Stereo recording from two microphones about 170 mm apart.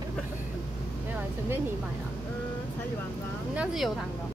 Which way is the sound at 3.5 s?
Centre (ahead or behind).